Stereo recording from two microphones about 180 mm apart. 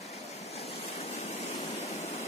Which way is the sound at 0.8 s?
35° left (ahead or behind).